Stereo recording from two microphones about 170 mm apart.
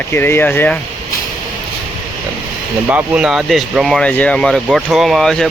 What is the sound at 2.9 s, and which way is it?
Speech, 10° right (ahead or behind).